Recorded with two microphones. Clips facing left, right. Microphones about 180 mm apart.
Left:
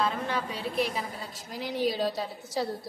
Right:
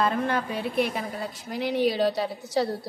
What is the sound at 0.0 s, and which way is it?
A woman's voice, 55° right (ahead or behind).